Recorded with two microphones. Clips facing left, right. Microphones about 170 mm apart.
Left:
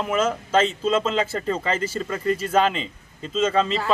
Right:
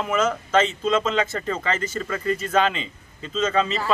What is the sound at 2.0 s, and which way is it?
Speech, 10° left (ahead or behind).